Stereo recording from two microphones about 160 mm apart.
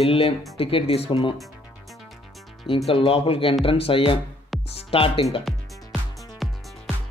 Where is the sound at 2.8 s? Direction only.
35° left (ahead or behind).